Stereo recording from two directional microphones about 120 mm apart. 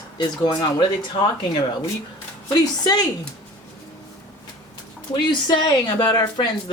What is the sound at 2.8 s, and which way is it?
Speech, 30° left (ahead or behind).